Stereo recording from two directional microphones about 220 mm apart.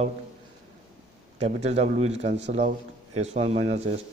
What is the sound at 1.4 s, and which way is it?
A man's voice, 30° right (ahead or behind).